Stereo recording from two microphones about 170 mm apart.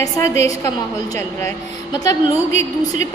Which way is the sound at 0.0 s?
20° left (ahead or behind).